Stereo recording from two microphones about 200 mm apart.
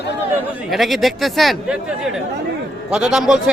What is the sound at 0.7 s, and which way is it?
Speech, centre (ahead or behind).